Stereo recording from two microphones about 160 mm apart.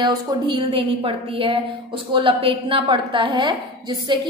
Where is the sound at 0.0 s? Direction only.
30° right (ahead or behind).